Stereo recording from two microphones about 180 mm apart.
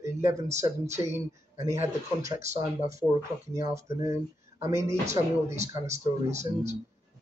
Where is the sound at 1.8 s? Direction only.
15° right (ahead or behind).